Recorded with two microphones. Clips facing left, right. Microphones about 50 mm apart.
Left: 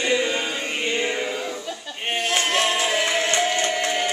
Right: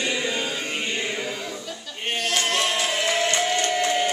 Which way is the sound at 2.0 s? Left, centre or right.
Centre.